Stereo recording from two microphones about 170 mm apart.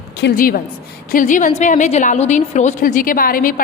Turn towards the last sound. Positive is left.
turn(degrees=55)  # may be behind; listen again after turning